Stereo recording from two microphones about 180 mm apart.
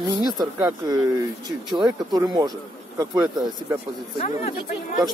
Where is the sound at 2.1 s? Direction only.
20° right (ahead or behind).